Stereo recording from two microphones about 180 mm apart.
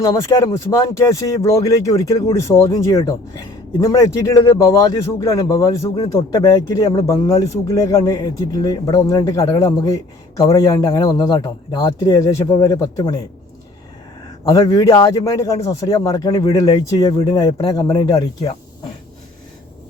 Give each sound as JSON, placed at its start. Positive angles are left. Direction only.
{"t": 0.0, "sound": "a man's voice", "side_deg": 20}
{"t": 14.4, "sound": "a man's voice", "side_deg": 20}